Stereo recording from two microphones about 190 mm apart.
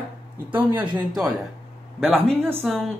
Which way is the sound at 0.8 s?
20° right (ahead or behind).